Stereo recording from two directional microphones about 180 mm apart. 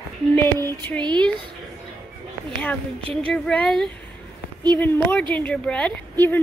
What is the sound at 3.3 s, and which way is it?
A woman's voice, 5° left (ahead or behind).